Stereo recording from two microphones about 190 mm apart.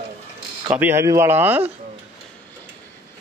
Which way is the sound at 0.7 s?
10° right (ahead or behind).